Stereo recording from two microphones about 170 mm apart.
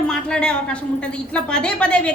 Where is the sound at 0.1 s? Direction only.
5° left (ahead or behind).